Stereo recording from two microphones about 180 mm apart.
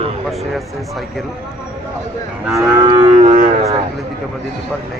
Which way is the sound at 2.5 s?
20° right (ahead or behind).